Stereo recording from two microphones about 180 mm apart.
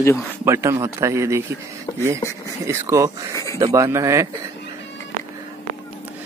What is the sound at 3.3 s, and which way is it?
Speech, 15° left (ahead or behind).